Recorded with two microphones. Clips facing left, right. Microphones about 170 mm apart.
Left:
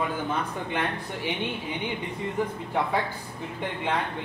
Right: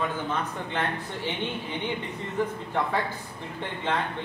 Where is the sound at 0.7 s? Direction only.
15° left (ahead or behind).